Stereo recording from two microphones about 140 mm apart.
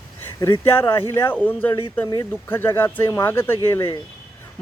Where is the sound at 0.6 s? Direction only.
15° left (ahead or behind).